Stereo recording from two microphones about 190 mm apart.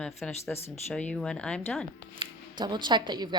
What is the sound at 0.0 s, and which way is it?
Speech, centre (ahead or behind).